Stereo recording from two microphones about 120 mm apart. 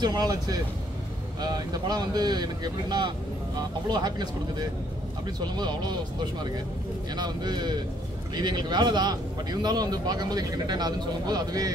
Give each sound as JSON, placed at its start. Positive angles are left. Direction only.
{"t": 0.0, "sound": "a man's voice", "side_deg": -35}